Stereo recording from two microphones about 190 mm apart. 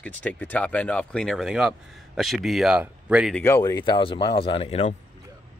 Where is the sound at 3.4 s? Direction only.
15° left (ahead or behind).